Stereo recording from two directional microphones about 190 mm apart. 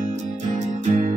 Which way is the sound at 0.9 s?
40° right (ahead or behind).